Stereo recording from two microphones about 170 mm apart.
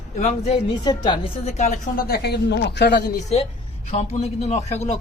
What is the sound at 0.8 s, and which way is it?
Speech, 25° left (ahead or behind).